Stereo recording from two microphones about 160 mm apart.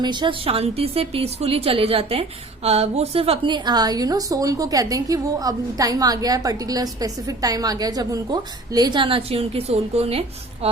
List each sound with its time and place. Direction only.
0.0 s a woman's voice: 30° right (ahead or behind)